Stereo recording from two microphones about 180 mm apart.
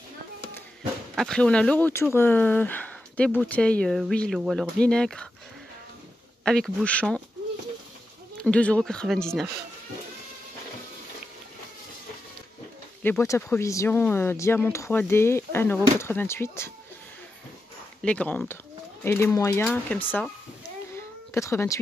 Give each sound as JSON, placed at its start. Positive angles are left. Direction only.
{"t": 1.1, "sound": "speech", "side_deg": 5}
{"t": 6.4, "sound": "speech", "side_deg": 5}
{"t": 8.4, "sound": "speech", "side_deg": 5}
{"t": 13.0, "sound": "speech", "side_deg": 15}
{"t": 18.0, "sound": "speech", "side_deg": 5}
{"t": 21.3, "sound": "speech", "side_deg": 15}